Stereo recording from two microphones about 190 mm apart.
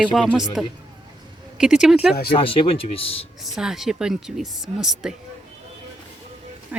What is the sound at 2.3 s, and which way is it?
Speech, 30° left (ahead or behind).